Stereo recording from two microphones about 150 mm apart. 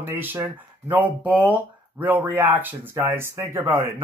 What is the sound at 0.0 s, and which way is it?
Speech, 15° right (ahead or behind).